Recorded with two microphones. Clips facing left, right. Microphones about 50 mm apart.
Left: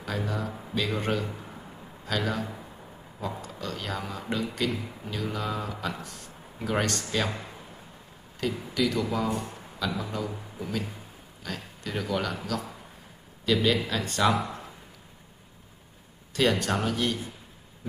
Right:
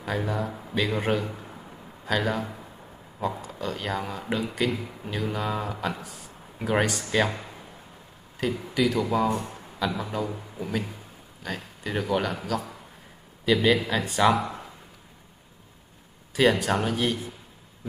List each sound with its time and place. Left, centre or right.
0.0 s speech: centre
8.4 s speech: centre
13.5 s speech: centre
16.3 s speech: centre